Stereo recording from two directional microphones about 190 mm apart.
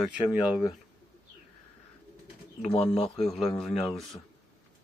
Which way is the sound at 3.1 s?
Centre (ahead or behind).